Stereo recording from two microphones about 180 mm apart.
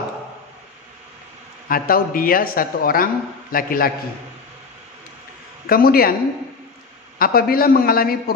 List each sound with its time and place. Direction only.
1.7 s a man's voice: 55° left (ahead or behind)
5.7 s a man's voice: 55° left (ahead or behind)
7.2 s a man's voice: 55° left (ahead or behind)